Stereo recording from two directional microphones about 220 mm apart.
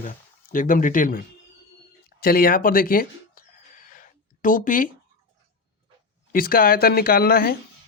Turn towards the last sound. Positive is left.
turn(degrees=45)  # may be behind; listen again after turning